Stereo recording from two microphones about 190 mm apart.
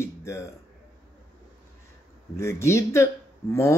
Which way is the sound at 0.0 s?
15° left (ahead or behind).